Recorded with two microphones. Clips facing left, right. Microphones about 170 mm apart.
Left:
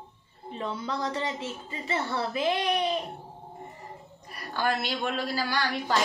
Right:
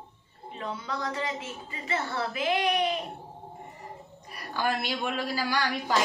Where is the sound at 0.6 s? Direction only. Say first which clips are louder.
Left 2 dB; 25° left (ahead or behind).